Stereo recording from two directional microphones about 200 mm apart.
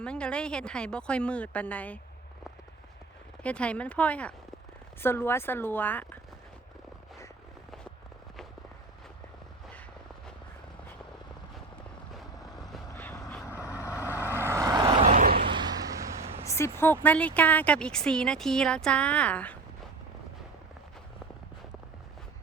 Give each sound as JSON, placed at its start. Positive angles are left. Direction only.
{"t": 0.0, "sound": "a woman's voice", "side_deg": 5}
{"t": 3.4, "sound": "speech", "side_deg": 5}
{"t": 12.9, "sound": "vehicle", "side_deg": 10}
{"t": 14.4, "sound": "vehicle", "side_deg": -15}
{"t": 15.0, "sound": "vehicle", "side_deg": -40}
{"t": 15.4, "sound": "vehicle", "side_deg": -20}
{"t": 16.5, "sound": "speech", "side_deg": 15}